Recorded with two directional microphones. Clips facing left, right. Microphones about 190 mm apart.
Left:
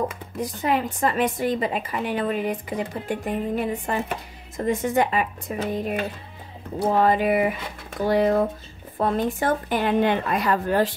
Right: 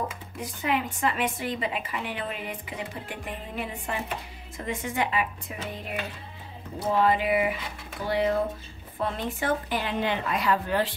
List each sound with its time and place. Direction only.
0.4 s speech: 40° left (ahead or behind)